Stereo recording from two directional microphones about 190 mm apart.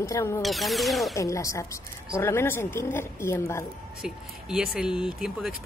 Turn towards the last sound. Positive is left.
turn(degrees=-5)  # may be behind; listen again after turning